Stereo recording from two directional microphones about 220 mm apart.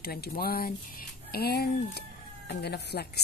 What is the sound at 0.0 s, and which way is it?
Speech, 45° left (ahead or behind).